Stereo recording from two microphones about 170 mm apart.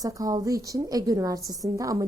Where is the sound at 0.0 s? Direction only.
20° right (ahead or behind).